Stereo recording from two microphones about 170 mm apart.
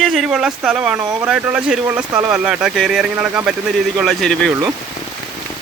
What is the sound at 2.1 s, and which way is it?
Speech, 20° right (ahead or behind).